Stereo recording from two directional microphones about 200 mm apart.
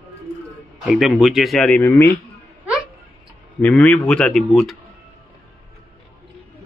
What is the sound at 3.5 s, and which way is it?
Speech, 5° left (ahead or behind).